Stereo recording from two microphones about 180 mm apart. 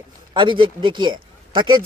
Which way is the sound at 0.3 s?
25° right (ahead or behind).